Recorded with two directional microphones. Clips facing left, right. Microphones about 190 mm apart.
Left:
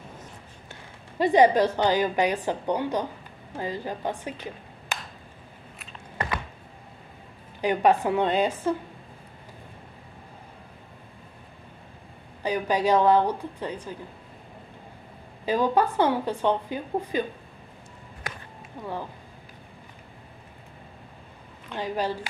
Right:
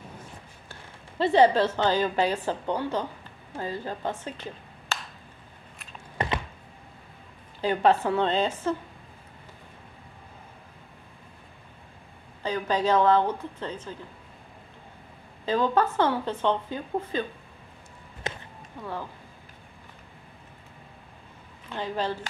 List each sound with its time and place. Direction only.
0.2 s a woman's voice: 15° left (ahead or behind)
6.1 s a sound: 20° right (ahead or behind)
7.6 s a woman's voice: 15° left (ahead or behind)
12.4 s a woman's voice: 10° left (ahead or behind)
15.4 s a woman's voice: 10° left (ahead or behind)
18.3 s walk: 25° right (ahead or behind)
18.8 s a woman's voice: 15° left (ahead or behind)
21.7 s a woman's voice: 15° left (ahead or behind)